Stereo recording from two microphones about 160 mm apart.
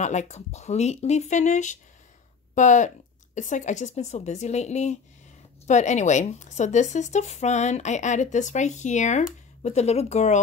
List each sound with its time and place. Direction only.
0.0 s speech: 45° left (ahead or behind)